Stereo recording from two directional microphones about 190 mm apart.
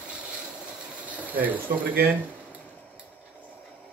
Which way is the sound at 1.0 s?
10° right (ahead or behind).